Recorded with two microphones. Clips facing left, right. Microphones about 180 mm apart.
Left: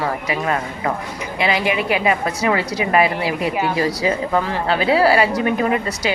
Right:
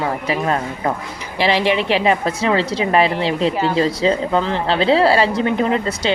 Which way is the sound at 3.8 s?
25° right (ahead or behind).